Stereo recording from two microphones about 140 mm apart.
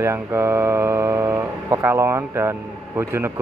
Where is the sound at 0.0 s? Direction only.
20° right (ahead or behind).